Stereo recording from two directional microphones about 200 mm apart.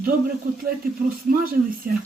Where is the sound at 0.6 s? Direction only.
45° right (ahead or behind).